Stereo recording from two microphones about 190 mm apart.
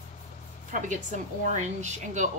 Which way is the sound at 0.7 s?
40° right (ahead or behind).